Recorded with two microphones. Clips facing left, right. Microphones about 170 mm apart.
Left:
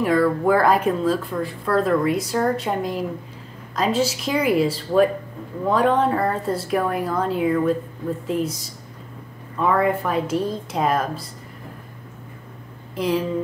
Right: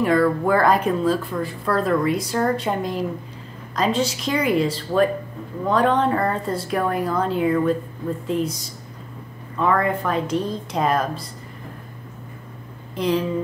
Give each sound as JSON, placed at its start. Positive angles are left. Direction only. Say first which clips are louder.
{"t": 0.0, "sound": "speech", "louder": "even", "side_deg": 0}
{"t": 9.6, "sound": "speech", "louder": "left 1 dB", "side_deg": 5}
{"t": 12.9, "sound": "speech", "louder": "right 1 dB", "side_deg": 5}